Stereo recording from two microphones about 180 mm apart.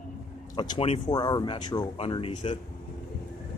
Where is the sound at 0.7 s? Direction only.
30° left (ahead or behind).